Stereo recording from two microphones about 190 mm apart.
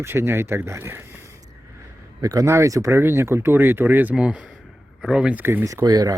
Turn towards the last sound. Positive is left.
turn(degrees=-20)  # may be behind; listen again after turning